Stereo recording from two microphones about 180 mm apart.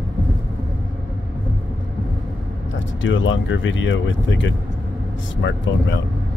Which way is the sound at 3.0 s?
90° left.